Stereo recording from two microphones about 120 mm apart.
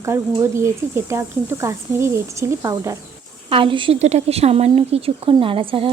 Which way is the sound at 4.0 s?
70° right (ahead or behind).